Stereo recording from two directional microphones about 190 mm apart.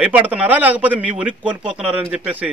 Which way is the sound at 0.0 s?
10° right (ahead or behind).